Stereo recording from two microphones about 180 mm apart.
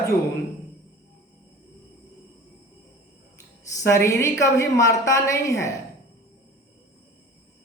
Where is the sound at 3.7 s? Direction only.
15° left (ahead or behind).